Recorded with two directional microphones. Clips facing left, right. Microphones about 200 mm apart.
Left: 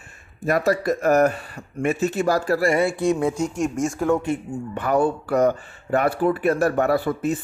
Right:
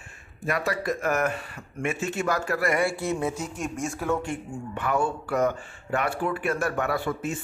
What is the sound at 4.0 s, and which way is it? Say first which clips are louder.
Speech: left 6 dB; 20° left (ahead or behind).